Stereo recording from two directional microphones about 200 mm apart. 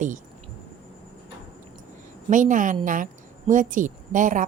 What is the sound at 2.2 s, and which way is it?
A woman's voice, 40° right (ahead or behind).